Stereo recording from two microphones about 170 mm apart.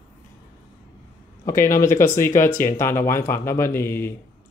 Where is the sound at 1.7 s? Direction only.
50° left (ahead or behind).